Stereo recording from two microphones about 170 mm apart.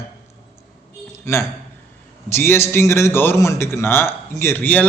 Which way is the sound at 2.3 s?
15° left (ahead or behind).